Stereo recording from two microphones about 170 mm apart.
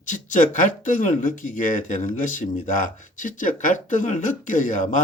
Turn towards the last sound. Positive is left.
turn(degrees=50)  # may be behind; listen again after turning